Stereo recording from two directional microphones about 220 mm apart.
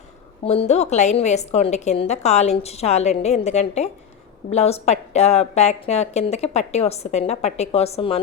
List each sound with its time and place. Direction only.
0.4 s a woman's voice: 30° left (ahead or behind)